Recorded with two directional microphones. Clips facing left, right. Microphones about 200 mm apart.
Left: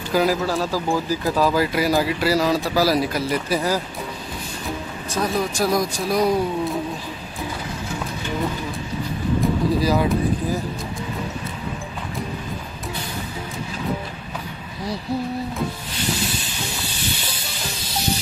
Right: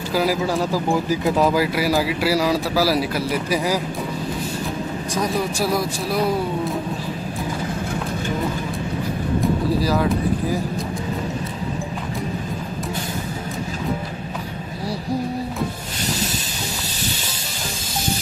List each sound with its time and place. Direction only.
0.1 s speech: 5° right (ahead or behind)
0.4 s speech: 15° right (ahead or behind)
1.6 s speech: 5° right (ahead or behind)
5.1 s speech: 10° right (ahead or behind)
9.4 s vehicle: centre (ahead or behind)